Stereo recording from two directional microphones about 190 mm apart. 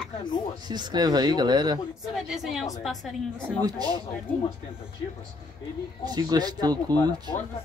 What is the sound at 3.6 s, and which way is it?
Speech, 20° right (ahead or behind).